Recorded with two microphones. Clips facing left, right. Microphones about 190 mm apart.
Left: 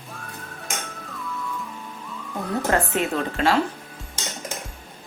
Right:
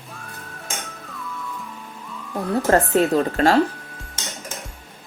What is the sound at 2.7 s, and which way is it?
Speech, 35° right (ahead or behind).